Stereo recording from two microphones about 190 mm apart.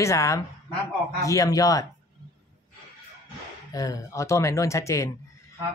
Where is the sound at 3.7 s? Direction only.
20° left (ahead or behind).